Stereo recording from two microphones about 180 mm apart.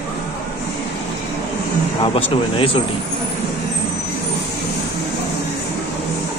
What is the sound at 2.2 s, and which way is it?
Speech, 30° left (ahead or behind).